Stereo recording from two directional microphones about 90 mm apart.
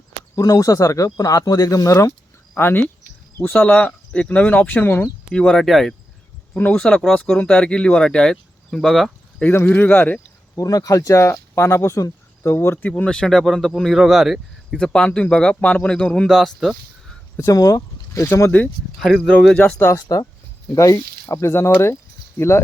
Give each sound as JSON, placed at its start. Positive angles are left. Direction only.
{"t": 0.3, "sound": "speech", "side_deg": 40}
{"t": 2.6, "sound": "speech", "side_deg": 25}
{"t": 5.3, "sound": "speech", "side_deg": 10}
{"t": 9.4, "sound": "speech", "side_deg": 20}
{"t": 10.6, "sound": "speech", "side_deg": 40}
{"t": 12.9, "sound": "speech", "side_deg": 10}
{"t": 14.8, "sound": "speech", "side_deg": 10}
{"t": 17.3, "sound": "speech", "side_deg": 35}
{"t": 18.9, "sound": "speech", "side_deg": 5}
{"t": 19.5, "sound": "speech", "side_deg": 15}
{"t": 19.9, "sound": "speech", "side_deg": 40}